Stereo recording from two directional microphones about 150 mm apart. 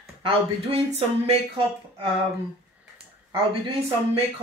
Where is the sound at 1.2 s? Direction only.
40° right (ahead or behind).